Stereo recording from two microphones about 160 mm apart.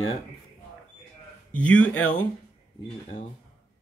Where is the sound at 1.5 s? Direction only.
10° left (ahead or behind).